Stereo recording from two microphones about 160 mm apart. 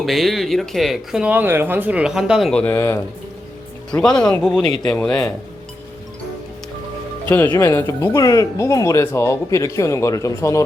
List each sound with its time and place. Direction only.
0.0 s speech: centre (ahead or behind); by 3.0 s 15° left (ahead or behind)
4.2 s speech: 5° left (ahead or behind)
4.6 s speech: 25° left (ahead or behind)
4.9 s speech: 5° left (ahead or behind)
7.3 s speech: 10° left (ahead or behind)